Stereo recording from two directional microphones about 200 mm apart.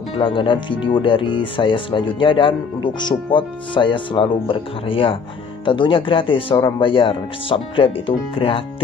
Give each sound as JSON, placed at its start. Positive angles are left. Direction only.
{"t": 0.2, "sound": "speech", "side_deg": 25}